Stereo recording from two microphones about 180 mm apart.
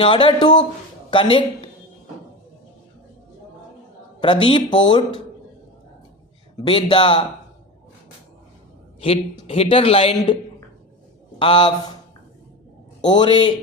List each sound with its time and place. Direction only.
0.0 s speech: 30° left (ahead or behind)
4.2 s speech: 30° left (ahead or behind)
6.6 s speech: 25° left (ahead or behind)
9.0 s a man's voice: 30° left (ahead or behind)
11.3 s speech: 25° left (ahead or behind)
13.0 s speech: 25° left (ahead or behind)